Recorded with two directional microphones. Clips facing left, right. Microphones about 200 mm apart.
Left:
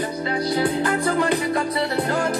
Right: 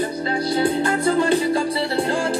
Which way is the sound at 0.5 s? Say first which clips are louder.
Right 2 dB; 25° right (ahead or behind).